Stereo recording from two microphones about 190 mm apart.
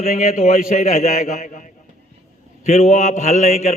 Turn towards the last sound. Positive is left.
turn(degrees=40)  # may be behind; listen again after turning